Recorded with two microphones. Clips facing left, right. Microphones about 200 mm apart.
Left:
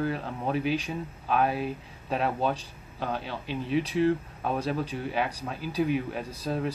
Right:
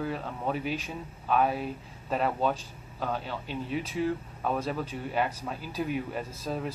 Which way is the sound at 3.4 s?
70° left (ahead or behind).